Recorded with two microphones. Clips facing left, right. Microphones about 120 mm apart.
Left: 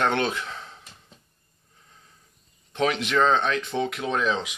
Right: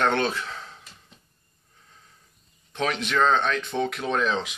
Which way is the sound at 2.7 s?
25° left (ahead or behind).